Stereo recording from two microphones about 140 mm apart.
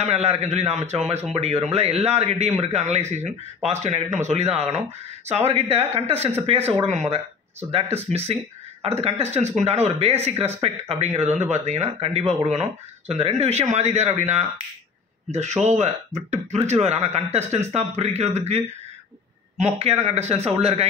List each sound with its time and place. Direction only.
0.0 s speech: 50° right (ahead or behind)
9.0 s a man's voice: 50° right (ahead or behind)
19.6 s speech: 50° right (ahead or behind)